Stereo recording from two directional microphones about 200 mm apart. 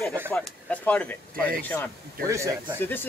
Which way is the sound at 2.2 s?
15° right (ahead or behind).